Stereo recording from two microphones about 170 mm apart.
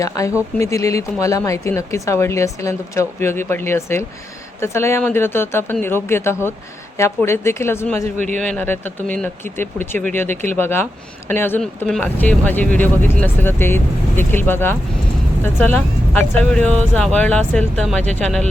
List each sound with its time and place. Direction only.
0.0 s speech: 20° left (ahead or behind); by 18.4 s 5° left (ahead or behind)